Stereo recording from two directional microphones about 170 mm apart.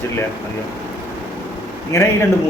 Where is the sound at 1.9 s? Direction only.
15° left (ahead or behind).